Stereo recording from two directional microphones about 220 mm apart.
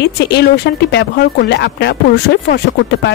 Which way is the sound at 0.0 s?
50° left (ahead or behind).